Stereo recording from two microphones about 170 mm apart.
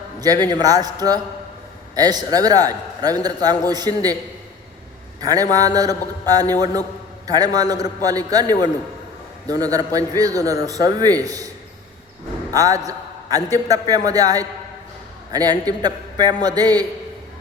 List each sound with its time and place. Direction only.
0.2 s a man's voice: 20° right (ahead or behind)
5.2 s a man's voice: 20° right (ahead or behind)
9.5 s a man's voice: 20° right (ahead or behind)